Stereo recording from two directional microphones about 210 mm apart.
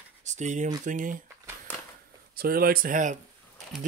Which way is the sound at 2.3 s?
45° right (ahead or behind).